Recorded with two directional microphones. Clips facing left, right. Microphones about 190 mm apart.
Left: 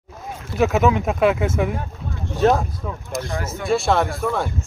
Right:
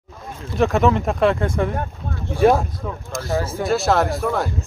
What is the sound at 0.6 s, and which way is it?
Speech, 5° left (ahead or behind).